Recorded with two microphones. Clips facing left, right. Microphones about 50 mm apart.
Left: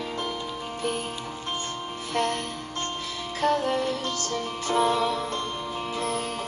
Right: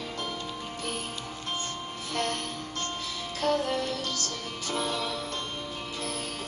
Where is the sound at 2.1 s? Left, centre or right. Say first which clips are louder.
Left 4 dB; left.